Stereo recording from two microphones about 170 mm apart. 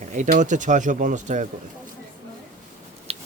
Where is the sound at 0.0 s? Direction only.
45° right (ahead or behind).